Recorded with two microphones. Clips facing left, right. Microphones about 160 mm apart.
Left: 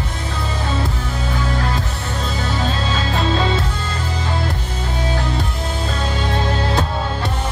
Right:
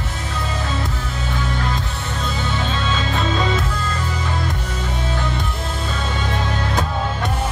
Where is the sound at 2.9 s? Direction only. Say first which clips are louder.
Left 1 dB; 35° left (ahead or behind).